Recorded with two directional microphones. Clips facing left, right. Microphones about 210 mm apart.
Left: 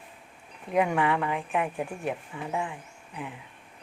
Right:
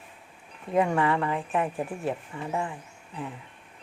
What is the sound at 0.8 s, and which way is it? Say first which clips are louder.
Speech: right 1 dB; centre (ahead or behind).